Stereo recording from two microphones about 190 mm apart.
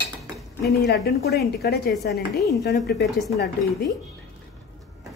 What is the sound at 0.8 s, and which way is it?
A woman's voice, 60° left (ahead or behind).